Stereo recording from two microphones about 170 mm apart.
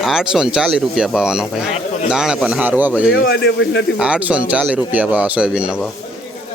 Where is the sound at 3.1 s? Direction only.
65° left (ahead or behind).